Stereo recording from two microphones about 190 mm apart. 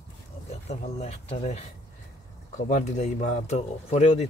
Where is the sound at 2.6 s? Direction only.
40° left (ahead or behind).